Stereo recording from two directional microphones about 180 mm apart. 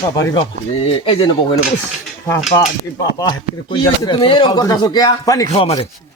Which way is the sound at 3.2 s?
25° left (ahead or behind).